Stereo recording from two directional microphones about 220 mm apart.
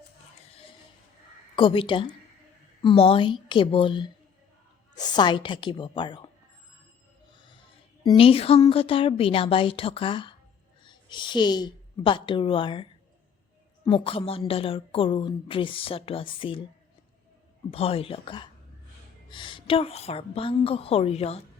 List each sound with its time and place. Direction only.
1.5 s a woman's voice: 25° left (ahead or behind)
8.0 s a woman's voice: 25° left (ahead or behind)
17.7 s a woman's voice: 25° left (ahead or behind)